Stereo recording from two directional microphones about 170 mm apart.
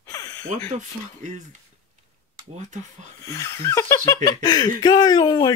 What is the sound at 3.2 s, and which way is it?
Speech, 15° left (ahead or behind).